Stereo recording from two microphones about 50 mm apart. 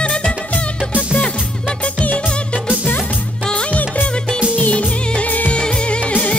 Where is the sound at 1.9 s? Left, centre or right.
Left.